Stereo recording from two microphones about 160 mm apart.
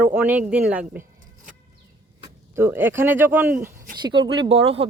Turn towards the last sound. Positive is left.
turn(degrees=-35)  # may be behind; listen again after turning